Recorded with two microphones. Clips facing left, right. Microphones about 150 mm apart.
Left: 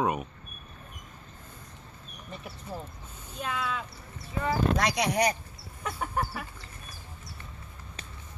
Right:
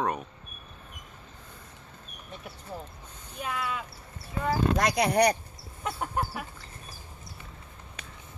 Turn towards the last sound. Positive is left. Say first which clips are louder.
# even
turn(degrees=-10)  # may be behind; listen again after turning